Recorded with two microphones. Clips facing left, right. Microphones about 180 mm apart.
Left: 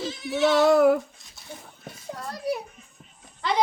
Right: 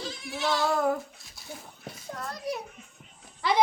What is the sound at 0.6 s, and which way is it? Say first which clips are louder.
Female singing: left 9 dB; 90° left.